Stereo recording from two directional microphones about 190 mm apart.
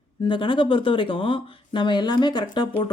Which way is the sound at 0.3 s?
25° left (ahead or behind).